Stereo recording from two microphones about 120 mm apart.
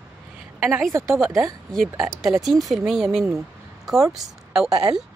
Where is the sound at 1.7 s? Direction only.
Centre (ahead or behind).